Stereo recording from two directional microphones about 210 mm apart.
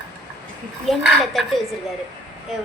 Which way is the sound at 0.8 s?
Centre (ahead or behind).